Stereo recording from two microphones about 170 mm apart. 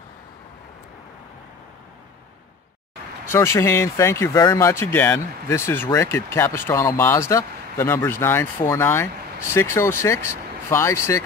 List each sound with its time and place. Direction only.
3.3 s speech: 15° left (ahead or behind)